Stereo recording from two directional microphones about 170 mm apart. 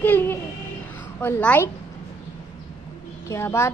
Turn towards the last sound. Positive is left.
turn(degrees=15)  # may be behind; listen again after turning